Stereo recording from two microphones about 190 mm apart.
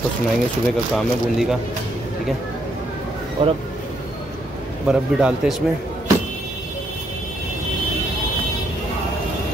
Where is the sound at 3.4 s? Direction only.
30° right (ahead or behind).